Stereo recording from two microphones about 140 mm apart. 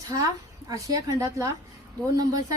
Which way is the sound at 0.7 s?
25° right (ahead or behind).